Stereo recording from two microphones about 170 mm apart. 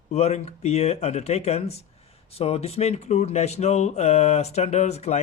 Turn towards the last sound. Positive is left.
turn(degrees=40)  # may be behind; listen again after turning